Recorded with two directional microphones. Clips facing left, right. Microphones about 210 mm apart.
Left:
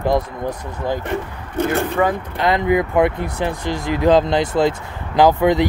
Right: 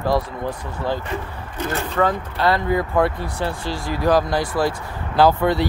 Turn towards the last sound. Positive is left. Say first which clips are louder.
# left 3 dB
turn(degrees=15)  # may be behind; listen again after turning